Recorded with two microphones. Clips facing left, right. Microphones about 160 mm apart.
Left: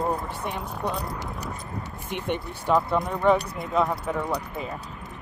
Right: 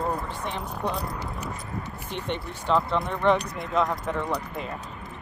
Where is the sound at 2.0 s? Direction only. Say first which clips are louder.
Left 4 dB; 10° left (ahead or behind).